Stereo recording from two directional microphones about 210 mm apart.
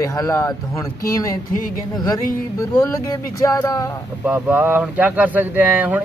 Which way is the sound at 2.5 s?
15° left (ahead or behind).